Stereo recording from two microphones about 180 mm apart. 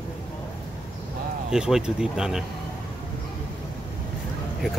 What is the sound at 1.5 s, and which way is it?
Speech, 5° right (ahead or behind).